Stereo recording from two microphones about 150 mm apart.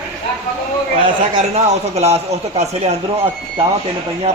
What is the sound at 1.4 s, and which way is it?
A man's voice, 45° right (ahead or behind).